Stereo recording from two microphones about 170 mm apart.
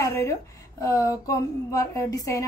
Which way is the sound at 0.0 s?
15° left (ahead or behind).